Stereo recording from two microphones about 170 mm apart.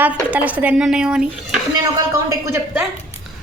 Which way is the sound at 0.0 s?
10° right (ahead or behind).